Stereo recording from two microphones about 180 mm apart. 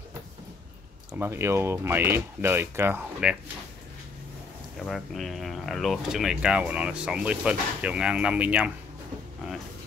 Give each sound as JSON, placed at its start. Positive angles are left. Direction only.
{"t": 1.1, "sound": "speech", "side_deg": -15}
{"t": 4.7, "sound": "speech", "side_deg": 0}
{"t": 9.4, "sound": "music", "side_deg": -5}